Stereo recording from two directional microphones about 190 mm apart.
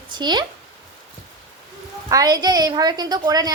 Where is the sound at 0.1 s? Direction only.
25° right (ahead or behind).